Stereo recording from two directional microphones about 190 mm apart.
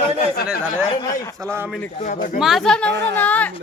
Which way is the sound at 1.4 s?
15° right (ahead or behind).